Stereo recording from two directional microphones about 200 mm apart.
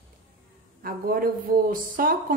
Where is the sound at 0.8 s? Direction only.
45° right (ahead or behind).